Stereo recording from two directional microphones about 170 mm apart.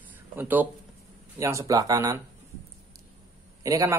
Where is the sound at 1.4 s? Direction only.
20° right (ahead or behind).